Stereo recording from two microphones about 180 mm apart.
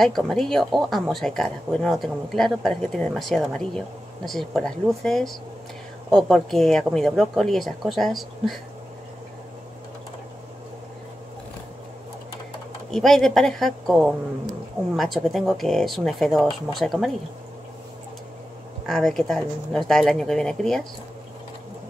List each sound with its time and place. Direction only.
0.0 s speech: centre (ahead or behind)
12.9 s speech: centre (ahead or behind)
18.9 s speech: centre (ahead or behind)